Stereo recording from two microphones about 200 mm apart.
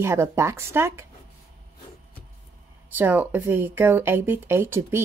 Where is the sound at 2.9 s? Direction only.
10° right (ahead or behind).